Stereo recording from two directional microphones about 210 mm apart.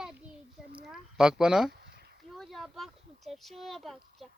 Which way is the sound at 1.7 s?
50° right (ahead or behind).